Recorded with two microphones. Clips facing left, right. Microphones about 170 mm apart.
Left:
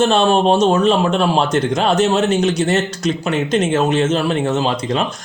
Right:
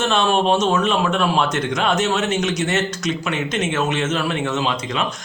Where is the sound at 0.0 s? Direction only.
35° left (ahead or behind).